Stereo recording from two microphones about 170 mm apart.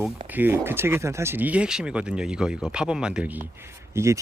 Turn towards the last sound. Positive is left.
turn(degrees=-15)  # may be behind; listen again after turning